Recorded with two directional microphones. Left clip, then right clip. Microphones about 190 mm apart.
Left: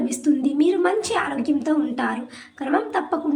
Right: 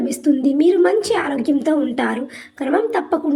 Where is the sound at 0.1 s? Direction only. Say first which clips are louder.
Right 4 dB; 15° right (ahead or behind).